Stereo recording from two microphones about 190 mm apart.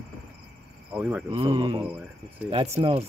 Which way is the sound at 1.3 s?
25° right (ahead or behind).